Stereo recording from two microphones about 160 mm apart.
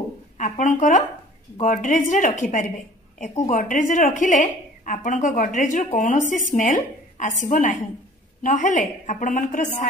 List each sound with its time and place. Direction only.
0.4 s a woman's voice: 50° left (ahead or behind)